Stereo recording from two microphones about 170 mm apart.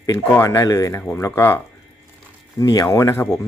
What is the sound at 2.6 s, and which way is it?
Speech, 20° left (ahead or behind).